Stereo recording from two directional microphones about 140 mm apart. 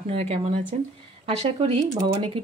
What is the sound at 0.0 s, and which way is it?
A woman's voice, 50° right (ahead or behind).